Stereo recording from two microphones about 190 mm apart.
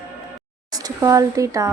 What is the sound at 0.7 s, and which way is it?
Speech, 20° right (ahead or behind).